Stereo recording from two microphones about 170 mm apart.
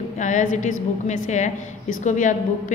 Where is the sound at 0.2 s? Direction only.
45° left (ahead or behind).